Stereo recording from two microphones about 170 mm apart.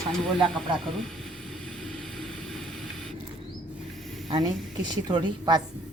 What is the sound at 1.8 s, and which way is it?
Spray, centre (ahead or behind).